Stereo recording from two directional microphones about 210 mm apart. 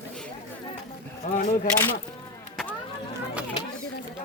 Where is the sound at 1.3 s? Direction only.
40° left (ahead or behind).